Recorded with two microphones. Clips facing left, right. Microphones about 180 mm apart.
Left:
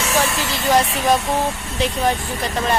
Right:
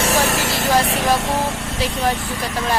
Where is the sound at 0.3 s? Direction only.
80° right.